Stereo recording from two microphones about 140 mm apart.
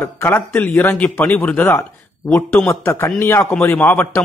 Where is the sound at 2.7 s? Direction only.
20° left (ahead or behind).